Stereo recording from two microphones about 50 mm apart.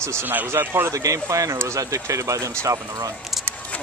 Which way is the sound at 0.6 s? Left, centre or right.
Right.